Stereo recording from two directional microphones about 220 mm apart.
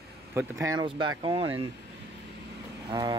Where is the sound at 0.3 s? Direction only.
15° right (ahead or behind).